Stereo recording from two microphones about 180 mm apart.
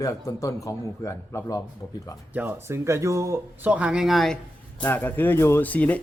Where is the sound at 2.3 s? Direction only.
10° right (ahead or behind).